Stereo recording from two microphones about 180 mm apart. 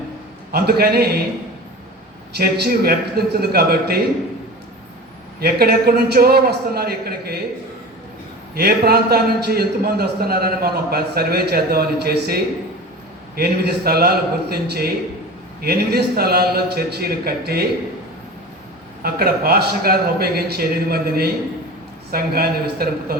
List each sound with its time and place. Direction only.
0.5 s a man's voice: 60° right (ahead or behind)
2.4 s a man's voice: 55° right (ahead or behind)
5.4 s a man's voice: 60° right (ahead or behind)
8.5 s a man's voice: 60° right (ahead or behind)
19.0 s a man's voice: 60° right (ahead or behind)